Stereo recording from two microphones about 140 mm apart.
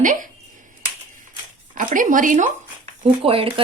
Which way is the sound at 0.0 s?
70° right (ahead or behind).